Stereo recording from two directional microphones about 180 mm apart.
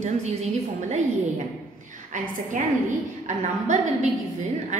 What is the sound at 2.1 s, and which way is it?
A woman's voice, 45° right (ahead or behind).